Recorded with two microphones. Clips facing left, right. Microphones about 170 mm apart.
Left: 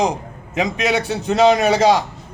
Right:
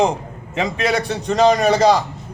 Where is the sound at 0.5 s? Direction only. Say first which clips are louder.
Left 1 dB; 15° left (ahead or behind).